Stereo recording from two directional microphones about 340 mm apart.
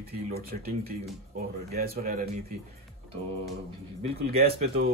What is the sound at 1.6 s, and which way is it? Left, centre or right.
Speech, right.